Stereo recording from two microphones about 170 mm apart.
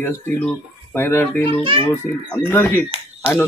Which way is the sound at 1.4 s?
30° right (ahead or behind).